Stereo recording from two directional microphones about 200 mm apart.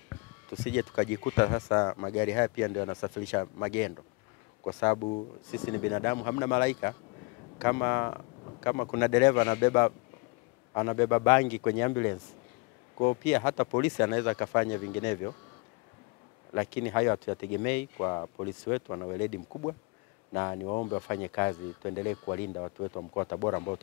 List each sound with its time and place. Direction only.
0.7 s speech: 10° left (ahead or behind)
5.6 s speech: 15° left (ahead or behind)
13.2 s speech: 10° left (ahead or behind)
16.5 s speech: 15° left (ahead or behind)
21.1 s speech: 15° left (ahead or behind)